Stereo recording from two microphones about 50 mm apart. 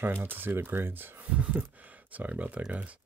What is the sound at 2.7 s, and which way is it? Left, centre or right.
Speech, right.